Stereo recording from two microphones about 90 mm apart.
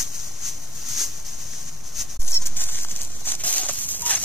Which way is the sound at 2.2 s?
25° left (ahead or behind).